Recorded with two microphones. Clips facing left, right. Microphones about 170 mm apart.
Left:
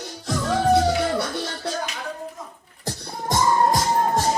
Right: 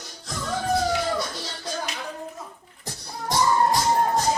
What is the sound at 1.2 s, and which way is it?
Music, 65° left (ahead or behind).